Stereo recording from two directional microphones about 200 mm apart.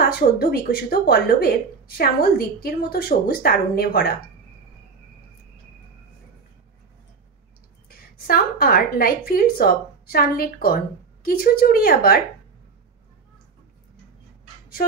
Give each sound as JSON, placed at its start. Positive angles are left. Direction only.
{"t": 0.0, "sound": "a woman's voice", "side_deg": 50}
{"t": 8.3, "sound": "a woman's voice", "side_deg": 50}